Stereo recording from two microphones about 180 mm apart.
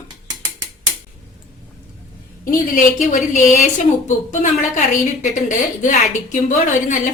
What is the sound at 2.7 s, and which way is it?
A woman's voice, 45° left (ahead or behind).